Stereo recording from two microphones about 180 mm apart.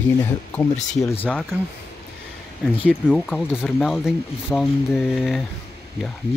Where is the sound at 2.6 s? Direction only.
5° right (ahead or behind).